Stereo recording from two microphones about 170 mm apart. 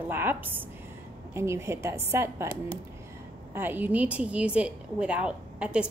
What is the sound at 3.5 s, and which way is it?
A woman's voice, 10° right (ahead or behind).